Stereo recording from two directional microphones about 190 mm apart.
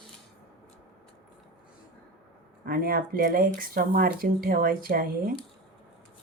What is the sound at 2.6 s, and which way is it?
Speech, 55° right (ahead or behind).